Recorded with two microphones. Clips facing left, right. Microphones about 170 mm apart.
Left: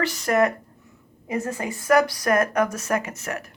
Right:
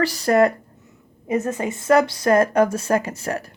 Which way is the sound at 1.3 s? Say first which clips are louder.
Right 5 dB; 20° right (ahead or behind).